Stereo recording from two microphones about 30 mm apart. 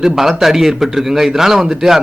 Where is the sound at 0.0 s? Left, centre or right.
Centre.